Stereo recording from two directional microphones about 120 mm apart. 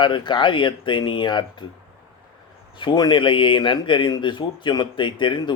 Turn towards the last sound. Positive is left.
turn(degrees=40)  # may be behind; listen again after turning